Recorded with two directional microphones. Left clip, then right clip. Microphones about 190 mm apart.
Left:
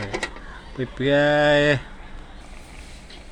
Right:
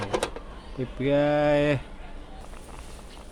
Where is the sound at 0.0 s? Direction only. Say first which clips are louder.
Even; 30° right (ahead or behind).